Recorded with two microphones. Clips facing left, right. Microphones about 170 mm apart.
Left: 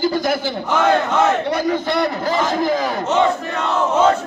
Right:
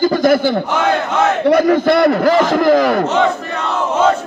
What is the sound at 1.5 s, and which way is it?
A man's voice, 75° right (ahead or behind).